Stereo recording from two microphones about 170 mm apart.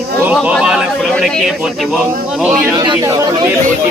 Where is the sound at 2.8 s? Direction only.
25° right (ahead or behind).